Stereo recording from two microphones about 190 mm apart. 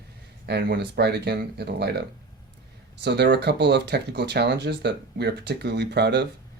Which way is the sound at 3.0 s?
60° right (ahead or behind).